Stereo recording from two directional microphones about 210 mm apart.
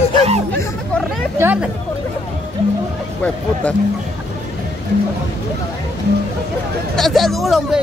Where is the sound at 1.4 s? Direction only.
10° right (ahead or behind).